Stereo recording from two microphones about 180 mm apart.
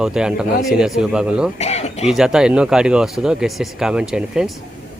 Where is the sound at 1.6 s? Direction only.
35° left (ahead or behind).